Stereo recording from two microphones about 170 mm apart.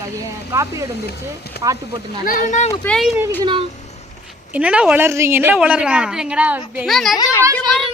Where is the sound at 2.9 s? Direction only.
Centre (ahead or behind).